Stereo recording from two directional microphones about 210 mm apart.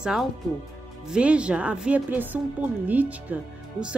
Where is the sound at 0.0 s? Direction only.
5° right (ahead or behind).